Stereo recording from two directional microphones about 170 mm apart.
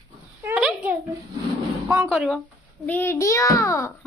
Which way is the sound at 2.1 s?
Centre (ahead or behind).